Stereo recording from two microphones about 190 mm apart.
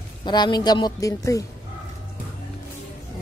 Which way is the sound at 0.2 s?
20° left (ahead or behind).